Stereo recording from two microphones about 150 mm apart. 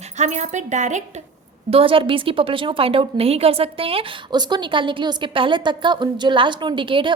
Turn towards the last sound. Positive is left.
turn(degrees=-35)  # may be behind; listen again after turning